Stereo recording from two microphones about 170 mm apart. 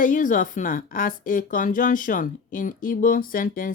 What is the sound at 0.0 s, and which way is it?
A woman's voice, 50° left (ahead or behind).